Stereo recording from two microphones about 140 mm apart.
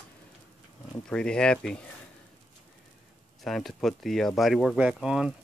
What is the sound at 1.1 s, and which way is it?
Speech, 5° left (ahead or behind).